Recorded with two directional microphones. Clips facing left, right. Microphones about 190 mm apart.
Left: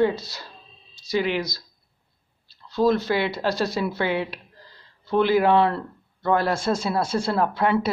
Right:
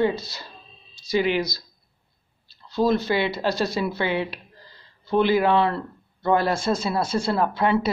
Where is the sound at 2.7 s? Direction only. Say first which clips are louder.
Even; centre (ahead or behind).